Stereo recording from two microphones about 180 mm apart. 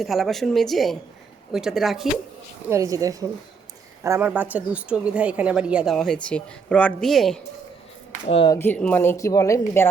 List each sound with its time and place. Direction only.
0.0 s a woman's voice: centre (ahead or behind)
2.6 s a woman's voice: 15° right (ahead or behind); by 7.3 s centre (ahead or behind)
8.3 s speech: 30° left (ahead or behind)
8.5 s speech: 10° left (ahead or behind)